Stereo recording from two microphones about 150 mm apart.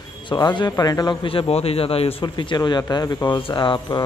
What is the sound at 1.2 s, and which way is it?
A man's voice, 40° left (ahead or behind).